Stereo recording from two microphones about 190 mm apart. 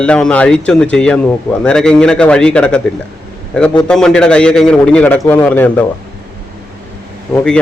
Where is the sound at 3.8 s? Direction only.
5° left (ahead or behind).